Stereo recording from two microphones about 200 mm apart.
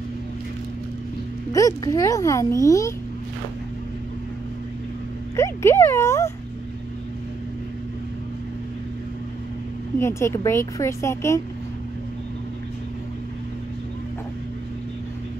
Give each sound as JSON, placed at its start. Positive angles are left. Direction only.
{"t": 1.5, "sound": "a woman's voice", "side_deg": 15}
{"t": 5.3, "sound": "speech", "side_deg": 15}
{"t": 9.9, "sound": "a woman's voice", "side_deg": 15}